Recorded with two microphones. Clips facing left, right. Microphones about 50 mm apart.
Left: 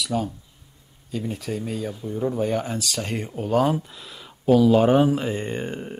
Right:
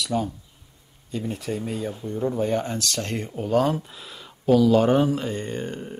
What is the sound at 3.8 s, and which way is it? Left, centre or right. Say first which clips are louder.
Speech: even; centre.